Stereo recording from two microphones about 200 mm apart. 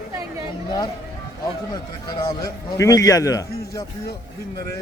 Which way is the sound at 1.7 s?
20° left (ahead or behind).